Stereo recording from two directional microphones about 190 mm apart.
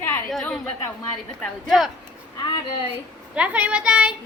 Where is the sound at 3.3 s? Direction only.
5° right (ahead or behind).